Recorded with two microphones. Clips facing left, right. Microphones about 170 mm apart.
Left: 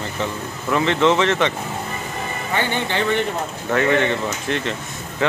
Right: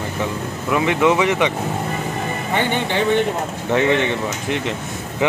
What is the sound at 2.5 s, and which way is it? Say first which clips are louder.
Speech: right 2 dB; 15° right (ahead or behind).